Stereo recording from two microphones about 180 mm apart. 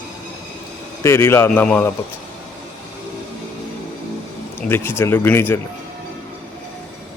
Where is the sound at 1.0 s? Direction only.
15° left (ahead or behind).